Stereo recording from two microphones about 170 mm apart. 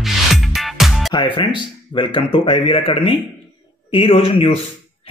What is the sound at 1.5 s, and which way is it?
A man's voice, 30° left (ahead or behind).